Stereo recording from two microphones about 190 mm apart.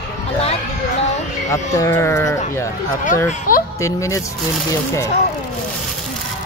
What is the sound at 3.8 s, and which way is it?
Speech, 15° left (ahead or behind).